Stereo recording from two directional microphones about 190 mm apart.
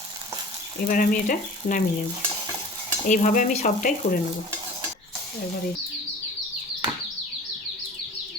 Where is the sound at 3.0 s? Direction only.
40° left (ahead or behind).